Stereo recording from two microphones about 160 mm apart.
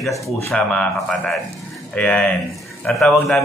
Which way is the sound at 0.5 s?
5° left (ahead or behind).